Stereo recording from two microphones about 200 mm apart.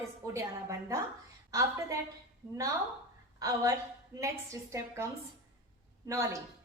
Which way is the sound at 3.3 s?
15° right (ahead or behind).